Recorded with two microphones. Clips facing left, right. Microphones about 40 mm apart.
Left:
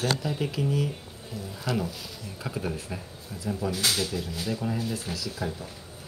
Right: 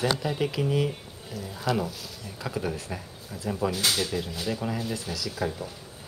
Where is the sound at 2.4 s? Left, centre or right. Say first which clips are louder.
Right 2 dB; right.